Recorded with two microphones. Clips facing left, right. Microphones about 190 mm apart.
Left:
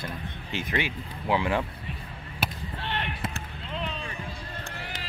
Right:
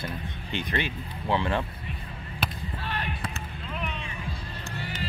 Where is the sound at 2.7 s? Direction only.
25° left (ahead or behind).